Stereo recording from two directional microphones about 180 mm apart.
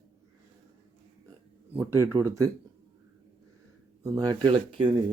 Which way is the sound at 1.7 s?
15° right (ahead or behind).